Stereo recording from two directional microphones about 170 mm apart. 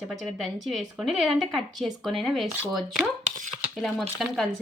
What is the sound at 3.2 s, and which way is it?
Chopping, 50° right (ahead or behind).